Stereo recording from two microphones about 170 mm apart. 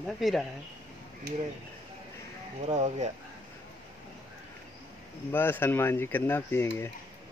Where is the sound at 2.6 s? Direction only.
40° right (ahead or behind).